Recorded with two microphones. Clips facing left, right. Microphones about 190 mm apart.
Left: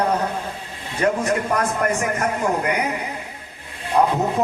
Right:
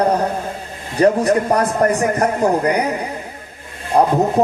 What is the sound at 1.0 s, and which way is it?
A man's voice, 35° right (ahead or behind).